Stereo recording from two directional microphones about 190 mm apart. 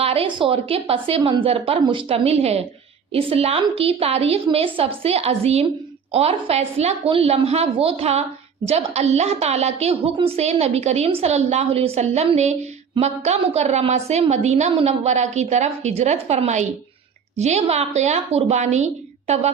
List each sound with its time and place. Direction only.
0.0 s a woman's voice: 30° right (ahead or behind)